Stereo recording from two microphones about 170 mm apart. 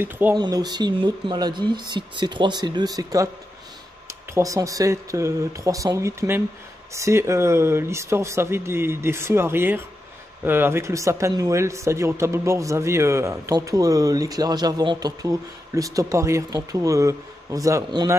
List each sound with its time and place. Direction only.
0.0 s speech: 15° right (ahead or behind)
0.4 s speech: 25° right (ahead or behind)